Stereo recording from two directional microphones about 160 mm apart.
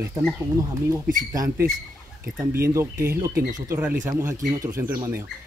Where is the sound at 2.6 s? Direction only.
15° right (ahead or behind).